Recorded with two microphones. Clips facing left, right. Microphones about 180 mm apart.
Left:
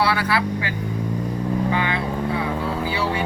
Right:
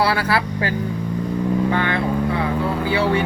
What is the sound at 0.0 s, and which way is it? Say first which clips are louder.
Vehicle: right 2 dB; 35° right (ahead or behind).